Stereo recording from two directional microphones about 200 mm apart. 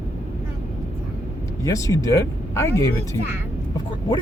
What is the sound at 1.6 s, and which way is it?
Speech, 15° left (ahead or behind).